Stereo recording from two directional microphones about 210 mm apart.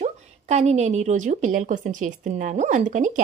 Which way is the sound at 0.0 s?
30° right (ahead or behind).